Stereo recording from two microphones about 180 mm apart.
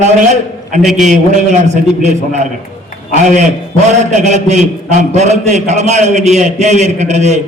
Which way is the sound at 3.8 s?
40° right (ahead or behind).